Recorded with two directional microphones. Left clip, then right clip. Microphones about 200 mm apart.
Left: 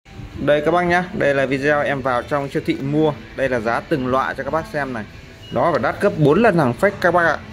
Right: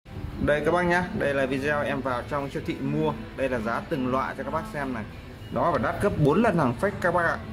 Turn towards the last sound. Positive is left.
turn(degrees=30)  # may be behind; listen again after turning